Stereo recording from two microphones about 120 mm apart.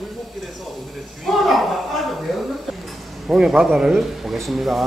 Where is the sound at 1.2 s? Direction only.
Centre (ahead or behind).